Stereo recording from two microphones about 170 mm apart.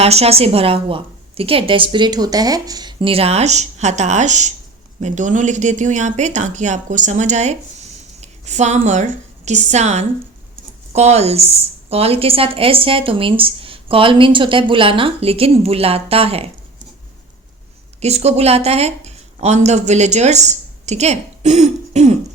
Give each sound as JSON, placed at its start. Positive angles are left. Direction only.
{"t": 0.0, "sound": "a woman's voice", "side_deg": -35}
{"t": 18.0, "sound": "a woman's voice", "side_deg": -40}